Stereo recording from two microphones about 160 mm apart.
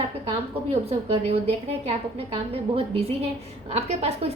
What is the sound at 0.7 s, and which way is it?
A woman's voice, 40° right (ahead or behind).